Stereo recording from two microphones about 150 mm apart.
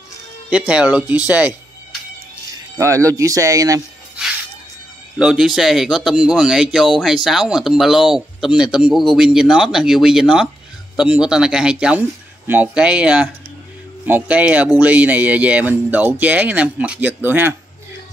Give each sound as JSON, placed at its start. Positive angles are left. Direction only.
{"t": 0.5, "sound": "speech", "side_deg": -5}
{"t": 2.8, "sound": "speech", "side_deg": -20}
{"t": 5.2, "sound": "speech", "side_deg": -5}